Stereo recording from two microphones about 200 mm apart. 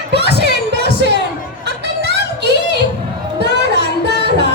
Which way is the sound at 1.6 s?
60° right (ahead or behind).